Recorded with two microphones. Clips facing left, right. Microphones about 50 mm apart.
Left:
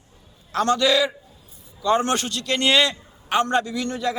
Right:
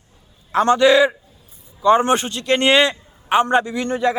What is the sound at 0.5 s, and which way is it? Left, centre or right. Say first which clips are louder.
A man's voice: right 6 dB; right.